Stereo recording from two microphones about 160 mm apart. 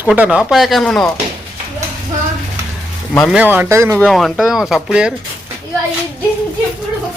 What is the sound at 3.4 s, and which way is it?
Speech, 15° right (ahead or behind).